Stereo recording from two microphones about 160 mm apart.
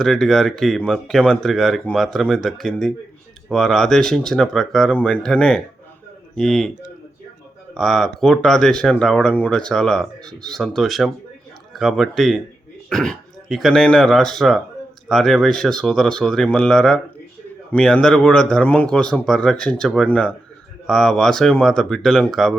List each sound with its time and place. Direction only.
0.0 s speech: centre (ahead or behind)
7.7 s speech: centre (ahead or behind)